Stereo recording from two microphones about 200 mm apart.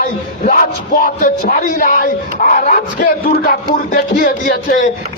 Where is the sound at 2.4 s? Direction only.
45° left (ahead or behind).